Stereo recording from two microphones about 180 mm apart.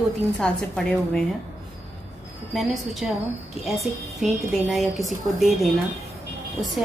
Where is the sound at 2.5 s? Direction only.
Centre (ahead or behind).